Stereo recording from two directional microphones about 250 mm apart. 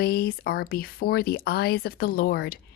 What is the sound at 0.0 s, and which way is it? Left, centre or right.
Speech, left.